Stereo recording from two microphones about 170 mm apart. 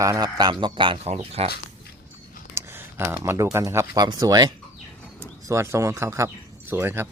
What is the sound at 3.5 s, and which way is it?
Speech, 15° right (ahead or behind).